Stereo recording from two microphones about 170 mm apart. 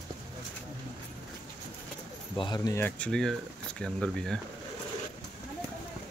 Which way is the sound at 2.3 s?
25° left (ahead or behind).